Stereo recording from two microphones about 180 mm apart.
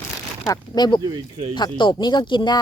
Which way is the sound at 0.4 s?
20° left (ahead or behind).